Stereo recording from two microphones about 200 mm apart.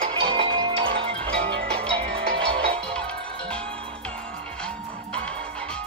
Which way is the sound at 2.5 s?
30° right (ahead or behind).